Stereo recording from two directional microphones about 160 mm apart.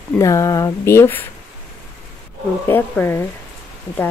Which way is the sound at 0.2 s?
20° left (ahead or behind).